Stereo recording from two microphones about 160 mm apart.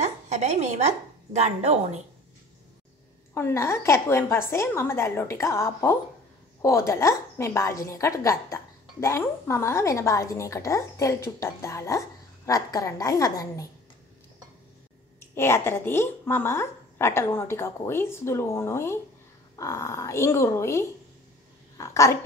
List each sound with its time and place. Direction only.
0.0 s speech: 45° right (ahead or behind)
3.3 s a woman's voice: 15° left (ahead or behind)
15.1 s a woman's voice: 15° left (ahead or behind)